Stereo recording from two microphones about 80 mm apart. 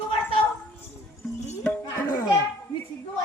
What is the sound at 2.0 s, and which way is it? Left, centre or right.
Children playing, left.